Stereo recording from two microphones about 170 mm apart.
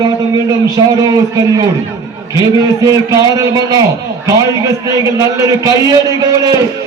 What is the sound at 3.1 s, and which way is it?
A man's voice, 20° right (ahead or behind).